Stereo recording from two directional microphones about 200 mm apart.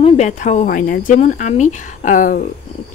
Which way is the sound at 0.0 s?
35° left (ahead or behind).